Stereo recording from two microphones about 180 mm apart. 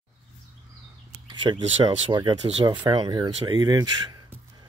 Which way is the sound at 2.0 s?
25° right (ahead or behind).